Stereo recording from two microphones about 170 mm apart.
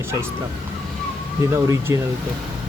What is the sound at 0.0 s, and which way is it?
Speech, 15° right (ahead or behind).